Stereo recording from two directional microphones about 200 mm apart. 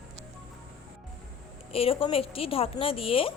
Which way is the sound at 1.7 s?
30° left (ahead or behind).